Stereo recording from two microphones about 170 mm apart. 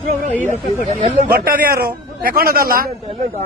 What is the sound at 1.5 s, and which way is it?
A man's voice, 60° right (ahead or behind).